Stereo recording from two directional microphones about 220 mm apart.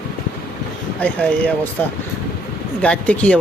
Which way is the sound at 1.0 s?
5° left (ahead or behind).